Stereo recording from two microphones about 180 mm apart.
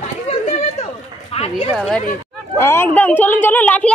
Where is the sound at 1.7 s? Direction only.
5° right (ahead or behind).